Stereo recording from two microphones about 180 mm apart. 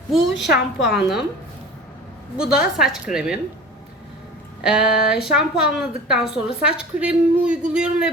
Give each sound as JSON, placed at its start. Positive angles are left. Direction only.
{"t": 0.3, "sound": "a woman's voice", "side_deg": 80}
{"t": 2.4, "sound": "a woman's voice", "side_deg": -5}
{"t": 4.6, "sound": "a woman's voice", "side_deg": -5}